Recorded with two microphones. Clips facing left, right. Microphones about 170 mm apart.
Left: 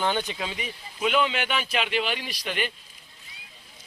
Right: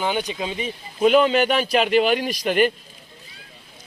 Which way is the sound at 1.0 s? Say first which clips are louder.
Right 9 dB; 40° right (ahead or behind).